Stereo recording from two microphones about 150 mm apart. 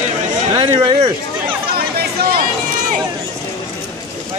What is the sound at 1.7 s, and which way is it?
Chatter, 90° right.